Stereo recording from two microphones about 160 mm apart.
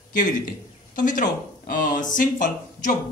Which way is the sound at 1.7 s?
60° left (ahead or behind).